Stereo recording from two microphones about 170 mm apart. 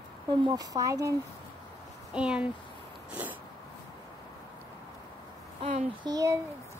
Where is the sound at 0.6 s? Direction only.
20° right (ahead or behind).